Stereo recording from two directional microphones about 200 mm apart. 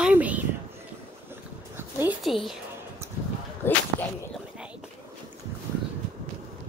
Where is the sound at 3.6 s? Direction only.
10° left (ahead or behind).